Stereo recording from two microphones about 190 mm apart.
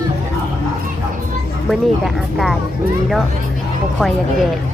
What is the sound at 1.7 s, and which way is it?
Speech, centre (ahead or behind).